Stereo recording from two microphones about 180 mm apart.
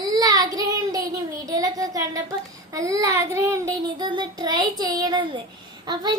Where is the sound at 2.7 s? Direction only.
20° right (ahead or behind).